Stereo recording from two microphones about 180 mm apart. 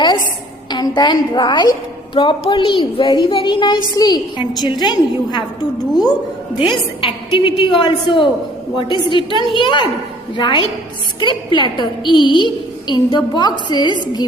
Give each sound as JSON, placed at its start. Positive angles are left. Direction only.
{"t": 0.7, "sound": "a woman's voice", "side_deg": 25}
{"t": 6.6, "sound": "a woman's voice", "side_deg": 30}